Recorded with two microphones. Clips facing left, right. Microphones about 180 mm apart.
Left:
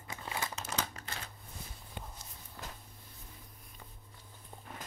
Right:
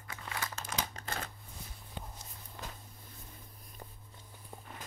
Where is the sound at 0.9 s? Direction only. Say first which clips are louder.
Right 4 dB; 45° right (ahead or behind).